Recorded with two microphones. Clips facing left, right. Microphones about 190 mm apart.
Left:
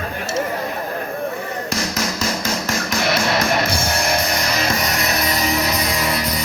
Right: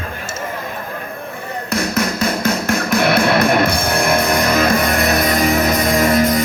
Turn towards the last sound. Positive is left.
turn(degrees=-50)  # may be behind; listen again after turning